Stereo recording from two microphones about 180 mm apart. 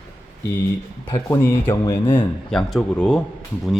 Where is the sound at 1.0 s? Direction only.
20° left (ahead or behind).